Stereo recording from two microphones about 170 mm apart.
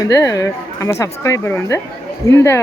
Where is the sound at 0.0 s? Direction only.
20° left (ahead or behind).